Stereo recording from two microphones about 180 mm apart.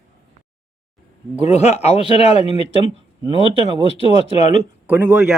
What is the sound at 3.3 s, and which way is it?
Speech, 30° right (ahead or behind).